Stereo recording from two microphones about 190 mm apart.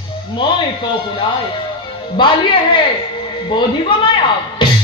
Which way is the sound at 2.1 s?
25° left (ahead or behind).